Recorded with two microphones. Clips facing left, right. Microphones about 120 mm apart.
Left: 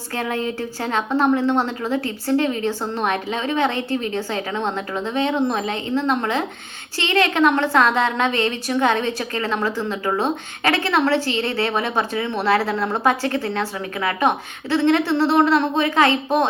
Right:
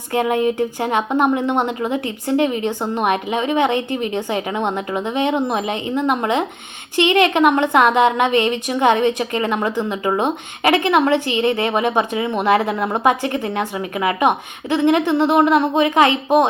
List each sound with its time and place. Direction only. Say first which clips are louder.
0.1 s a woman's voice: right 7 dB; 15° right (ahead or behind)